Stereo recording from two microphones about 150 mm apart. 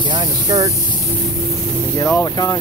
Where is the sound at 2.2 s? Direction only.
25° left (ahead or behind).